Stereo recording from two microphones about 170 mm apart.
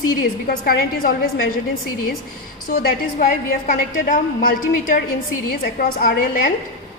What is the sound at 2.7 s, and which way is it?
A woman's voice, 55° left (ahead or behind).